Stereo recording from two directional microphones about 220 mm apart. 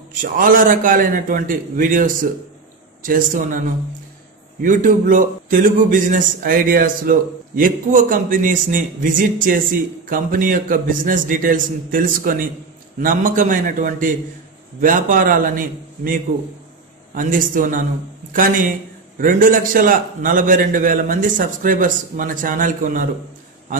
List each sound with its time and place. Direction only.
0.1 s a man's voice: 40° right (ahead or behind)